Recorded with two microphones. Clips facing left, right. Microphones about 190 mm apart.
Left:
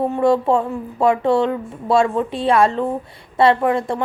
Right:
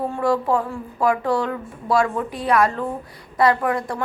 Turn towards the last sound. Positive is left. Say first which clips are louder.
# left 4 dB
turn(degrees=25)  # may be behind; listen again after turning